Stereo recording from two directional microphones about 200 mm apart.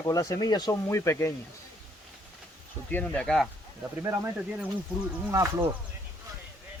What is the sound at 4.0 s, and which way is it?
Speech, 10° right (ahead or behind).